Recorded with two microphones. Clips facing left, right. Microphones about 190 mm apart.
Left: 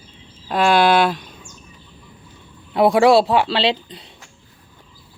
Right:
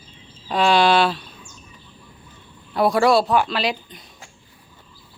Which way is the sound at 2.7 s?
25° left (ahead or behind).